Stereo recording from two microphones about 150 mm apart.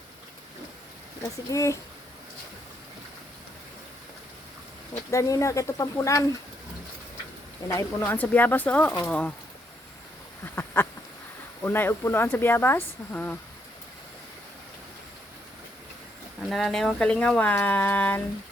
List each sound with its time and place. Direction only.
1.2 s speech: 20° left (ahead or behind)
5.1 s speech: 20° left (ahead or behind)
7.6 s speech: 25° left (ahead or behind)
8.0 s speech: 10° left (ahead or behind)
10.4 s a sound: 15° left (ahead or behind)
11.6 s speech: 15° left (ahead or behind)
16.4 s speech: centre (ahead or behind)